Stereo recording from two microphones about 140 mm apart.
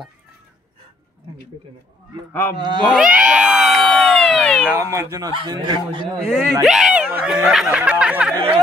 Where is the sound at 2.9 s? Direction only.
5° right (ahead or behind).